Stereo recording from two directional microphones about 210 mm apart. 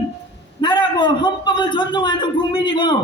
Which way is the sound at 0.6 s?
20° left (ahead or behind).